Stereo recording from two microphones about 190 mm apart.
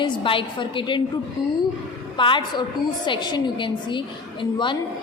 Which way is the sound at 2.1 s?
25° left (ahead or behind).